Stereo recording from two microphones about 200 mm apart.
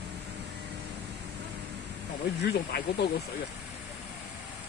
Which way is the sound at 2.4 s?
55° left (ahead or behind).